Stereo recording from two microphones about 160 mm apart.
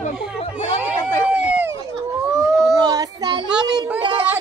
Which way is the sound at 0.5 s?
10° right (ahead or behind).